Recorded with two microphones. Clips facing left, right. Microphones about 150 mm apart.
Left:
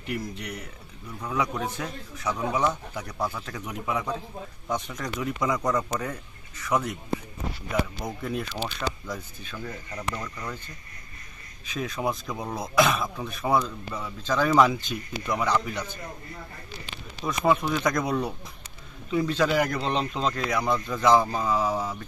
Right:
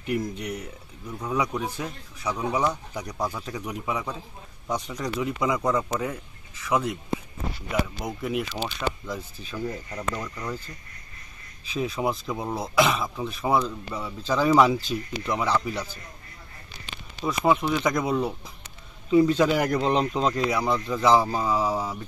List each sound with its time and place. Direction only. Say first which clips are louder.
0.0 s a man's voice: right 5 dB; 20° right (ahead or behind)
8.0 s a man's voice: right 2 dB; 10° right (ahead or behind)
8.6 s speech: right 2 dB; centre (ahead or behind)
9.5 s a man's voice: right 5 dB; 10° right (ahead or behind)
11.6 s speech: right 4 dB; 30° right (ahead or behind)
12.3 s a man's voice: right 3 dB; 15° right (ahead or behind)
12.6 s speech: even; centre (ahead or behind)
14.7 s speech: right 4 dB; 30° right (ahead or behind)
17.2 s a man's voice: right 1 dB; 5° right (ahead or behind)